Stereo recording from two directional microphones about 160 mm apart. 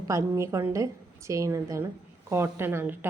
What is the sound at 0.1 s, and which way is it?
A woman's voice, 20° right (ahead or behind).